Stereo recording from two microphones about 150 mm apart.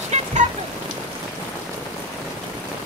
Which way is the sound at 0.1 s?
45° right (ahead or behind).